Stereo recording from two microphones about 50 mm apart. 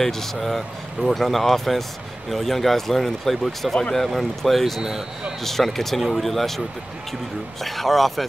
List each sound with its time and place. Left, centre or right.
0.0 s speech: centre
7.6 s speech: centre